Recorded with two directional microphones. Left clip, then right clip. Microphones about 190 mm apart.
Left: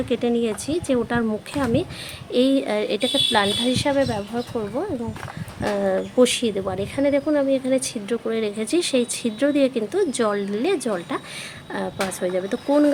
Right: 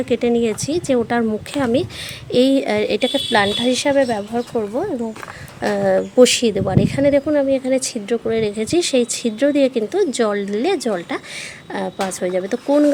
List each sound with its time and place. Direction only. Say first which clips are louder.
0.1 s a woman's voice: right 5 dB; 30° right (ahead or behind)